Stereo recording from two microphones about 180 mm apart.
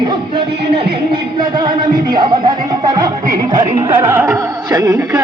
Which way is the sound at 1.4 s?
25° right (ahead or behind).